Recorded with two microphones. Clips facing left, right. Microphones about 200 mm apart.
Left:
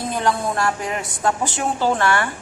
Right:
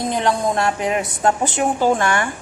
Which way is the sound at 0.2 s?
20° right (ahead or behind).